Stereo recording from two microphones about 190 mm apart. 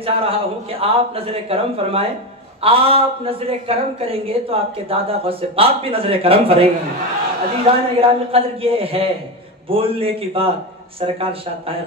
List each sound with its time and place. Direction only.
0.0 s speech: 30° right (ahead or behind)